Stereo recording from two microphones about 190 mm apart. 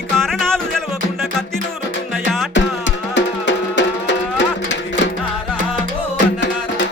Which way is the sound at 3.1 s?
70° left (ahead or behind).